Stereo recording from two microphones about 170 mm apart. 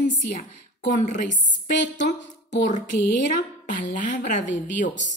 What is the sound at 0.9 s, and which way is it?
A woman's voice, 45° left (ahead or behind).